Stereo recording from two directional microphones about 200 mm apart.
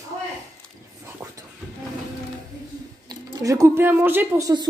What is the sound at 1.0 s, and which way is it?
Whispering, 15° right (ahead or behind).